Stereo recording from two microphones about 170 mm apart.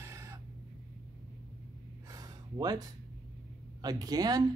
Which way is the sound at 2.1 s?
20° right (ahead or behind).